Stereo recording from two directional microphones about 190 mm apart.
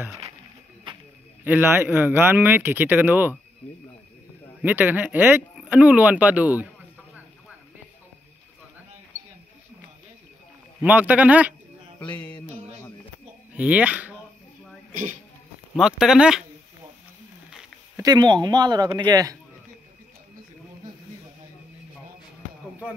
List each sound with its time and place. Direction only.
1.4 s speech: 10° right (ahead or behind)
4.6 s speech: 10° right (ahead or behind)
10.8 s speech: 10° right (ahead or behind)
12.0 s a sound: 5° left (ahead or behind)
13.6 s speech: 5° right (ahead or behind)
15.7 s speech: centre (ahead or behind)
17.5 s a sound: 5° right (ahead or behind)
18.0 s speech: 20° right (ahead or behind)